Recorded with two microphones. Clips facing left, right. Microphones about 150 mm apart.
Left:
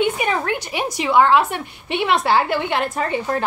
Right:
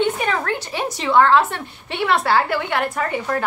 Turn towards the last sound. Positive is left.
turn(degrees=25)  # may be behind; listen again after turning